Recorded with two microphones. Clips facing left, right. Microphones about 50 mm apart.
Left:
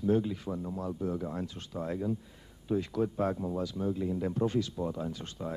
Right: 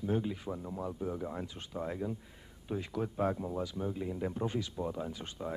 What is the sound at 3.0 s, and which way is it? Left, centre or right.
Speech, centre.